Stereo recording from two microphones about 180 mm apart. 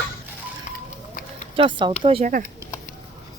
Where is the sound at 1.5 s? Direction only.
30° right (ahead or behind).